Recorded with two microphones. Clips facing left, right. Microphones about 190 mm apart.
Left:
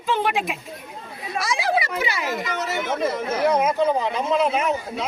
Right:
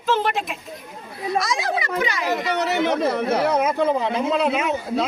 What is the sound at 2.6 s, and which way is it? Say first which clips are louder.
Speech: right 3 dB; 65° right (ahead or behind).